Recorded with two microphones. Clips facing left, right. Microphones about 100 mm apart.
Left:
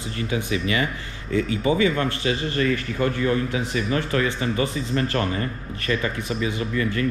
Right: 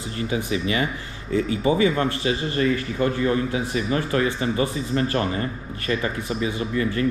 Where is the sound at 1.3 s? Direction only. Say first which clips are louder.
Right 1 dB; 25° right (ahead or behind).